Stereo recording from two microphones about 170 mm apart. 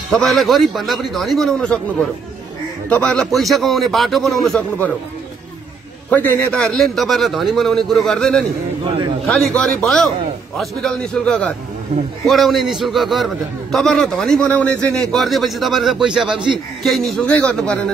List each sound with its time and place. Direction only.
0.2 s a man's voice: centre (ahead or behind)
2.9 s a man's voice: 5° left (ahead or behind)
6.0 s a man's voice: 10° left (ahead or behind)
8.8 s a man's voice: 25° right (ahead or behind)
9.2 s a man's voice: 5° left (ahead or behind)